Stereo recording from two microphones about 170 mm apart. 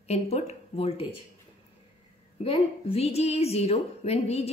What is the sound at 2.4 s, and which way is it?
Speech, 35° left (ahead or behind).